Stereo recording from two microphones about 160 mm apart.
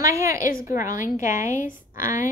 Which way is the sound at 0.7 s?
20° right (ahead or behind).